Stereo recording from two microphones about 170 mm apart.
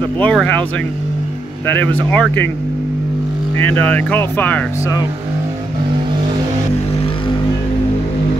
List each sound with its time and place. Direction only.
0.2 s speech: 5° left (ahead or behind)
1.7 s speech: 10° left (ahead or behind)
3.5 s speech: 10° left (ahead or behind)